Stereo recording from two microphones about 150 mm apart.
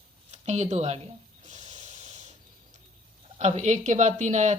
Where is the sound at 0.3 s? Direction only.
50° right (ahead or behind).